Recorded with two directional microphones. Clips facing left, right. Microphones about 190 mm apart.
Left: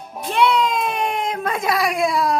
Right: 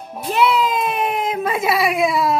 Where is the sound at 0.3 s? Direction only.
5° right (ahead or behind).